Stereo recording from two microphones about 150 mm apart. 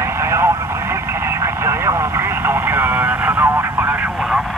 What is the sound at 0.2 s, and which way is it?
Vehicle, 20° right (ahead or behind).